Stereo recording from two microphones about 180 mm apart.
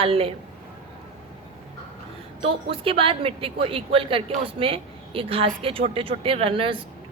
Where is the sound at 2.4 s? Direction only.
30° right (ahead or behind).